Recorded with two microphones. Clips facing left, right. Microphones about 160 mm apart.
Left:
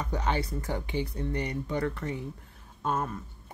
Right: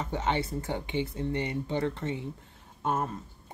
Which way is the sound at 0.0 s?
25° right (ahead or behind).